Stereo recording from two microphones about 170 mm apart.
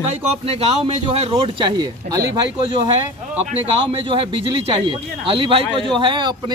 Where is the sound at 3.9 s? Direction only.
30° right (ahead or behind).